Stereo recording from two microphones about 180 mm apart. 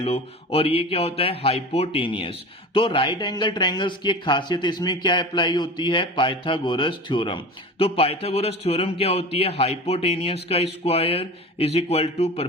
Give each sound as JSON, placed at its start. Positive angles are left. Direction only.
{"t": 0.0, "sound": "speech", "side_deg": 35}